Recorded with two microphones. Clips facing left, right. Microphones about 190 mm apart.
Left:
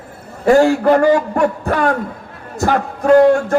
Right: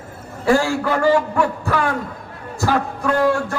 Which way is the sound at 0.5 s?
55° left (ahead or behind).